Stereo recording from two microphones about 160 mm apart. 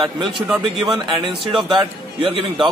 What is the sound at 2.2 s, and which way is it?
Speech, 35° right (ahead or behind).